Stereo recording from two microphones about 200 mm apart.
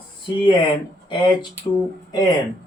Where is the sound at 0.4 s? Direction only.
25° left (ahead or behind).